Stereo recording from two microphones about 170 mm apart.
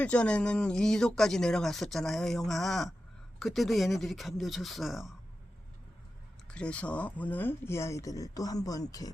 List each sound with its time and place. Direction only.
0.0 s speech: 5° left (ahead or behind)
6.5 s speech: 5° left (ahead or behind); by 9.1 s 20° left (ahead or behind)